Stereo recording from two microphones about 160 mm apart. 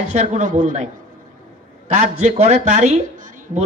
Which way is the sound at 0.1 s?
45° right (ahead or behind).